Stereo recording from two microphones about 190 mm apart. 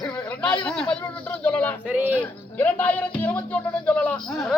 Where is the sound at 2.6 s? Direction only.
10° left (ahead or behind).